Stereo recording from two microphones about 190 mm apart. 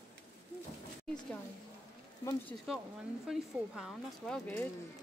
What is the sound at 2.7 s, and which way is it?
Speech, centre (ahead or behind).